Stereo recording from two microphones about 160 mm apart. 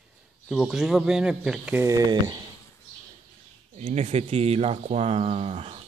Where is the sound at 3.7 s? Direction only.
45° right (ahead or behind).